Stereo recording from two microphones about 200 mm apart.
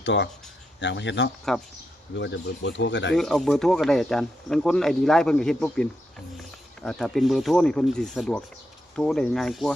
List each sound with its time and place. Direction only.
0.0 s speech: 65° left (ahead or behind)
3.2 s speech: centre (ahead or behind)